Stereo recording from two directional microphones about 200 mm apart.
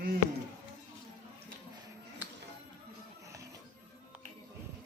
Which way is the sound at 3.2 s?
15° right (ahead or behind).